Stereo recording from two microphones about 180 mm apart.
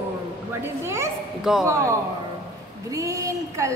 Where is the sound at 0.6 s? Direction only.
15° right (ahead or behind).